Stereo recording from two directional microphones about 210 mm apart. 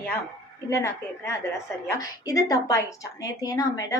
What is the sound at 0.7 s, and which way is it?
A woman's voice, 15° left (ahead or behind).